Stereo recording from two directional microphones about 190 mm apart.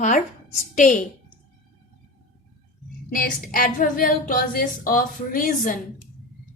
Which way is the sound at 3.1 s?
50° left (ahead or behind).